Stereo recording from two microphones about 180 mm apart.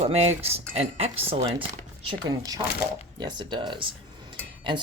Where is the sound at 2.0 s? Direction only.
25° right (ahead or behind).